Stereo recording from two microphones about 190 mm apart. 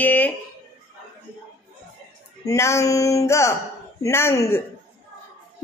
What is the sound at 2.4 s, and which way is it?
Speech, 15° left (ahead or behind).